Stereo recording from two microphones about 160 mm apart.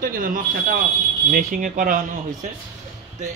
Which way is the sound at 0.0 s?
60° right (ahead or behind).